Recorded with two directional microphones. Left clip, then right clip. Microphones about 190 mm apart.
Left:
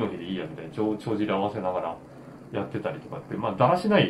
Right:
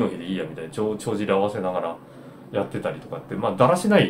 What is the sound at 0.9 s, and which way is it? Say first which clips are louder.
Speech: right 4 dB; 30° right (ahead or behind).